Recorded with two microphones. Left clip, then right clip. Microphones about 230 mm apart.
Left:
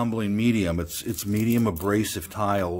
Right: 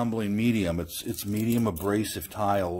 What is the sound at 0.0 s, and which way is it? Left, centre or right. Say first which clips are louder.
Speech: left 2 dB; centre.